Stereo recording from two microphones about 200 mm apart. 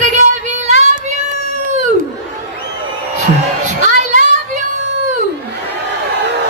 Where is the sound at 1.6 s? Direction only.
35° right (ahead or behind).